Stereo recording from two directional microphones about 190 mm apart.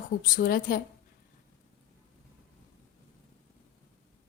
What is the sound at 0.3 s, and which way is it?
Speech, 50° left (ahead or behind).